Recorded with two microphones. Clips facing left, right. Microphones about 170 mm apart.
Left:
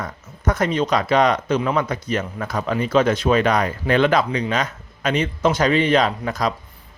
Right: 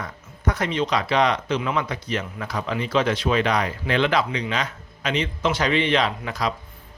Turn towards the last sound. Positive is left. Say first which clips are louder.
# left 4 dB
turn(degrees=45)  # may be behind; listen again after turning